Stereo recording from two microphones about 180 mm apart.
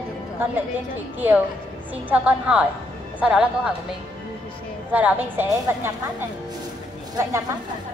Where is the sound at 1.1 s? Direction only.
10° right (ahead or behind).